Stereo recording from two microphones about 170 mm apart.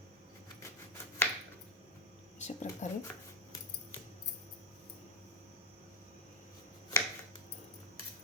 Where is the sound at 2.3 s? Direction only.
45° left (ahead or behind).